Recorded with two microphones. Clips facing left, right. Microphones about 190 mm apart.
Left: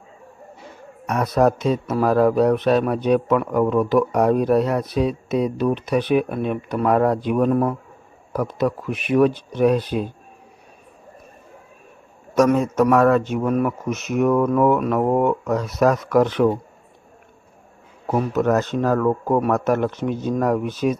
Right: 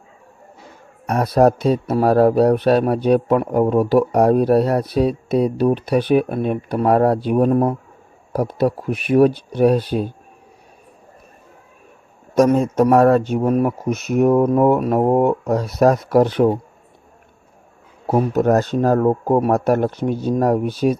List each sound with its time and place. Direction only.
1.0 s speech: 35° right (ahead or behind)
12.3 s a man's voice: 35° right (ahead or behind)
18.0 s speech: 35° right (ahead or behind)